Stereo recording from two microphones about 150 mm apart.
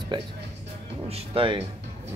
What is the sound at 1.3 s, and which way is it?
Speech, 35° right (ahead or behind).